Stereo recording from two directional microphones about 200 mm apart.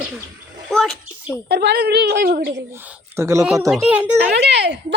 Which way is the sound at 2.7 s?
10° right (ahead or behind).